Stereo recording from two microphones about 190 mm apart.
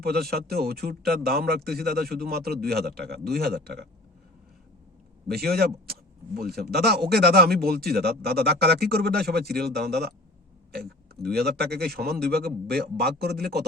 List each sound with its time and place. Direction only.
0.0 s speech: 55° right (ahead or behind)
5.3 s speech: 55° right (ahead or behind)
11.2 s speech: 55° right (ahead or behind)